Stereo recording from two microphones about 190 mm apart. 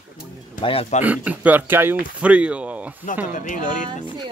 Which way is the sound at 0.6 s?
30° left (ahead or behind).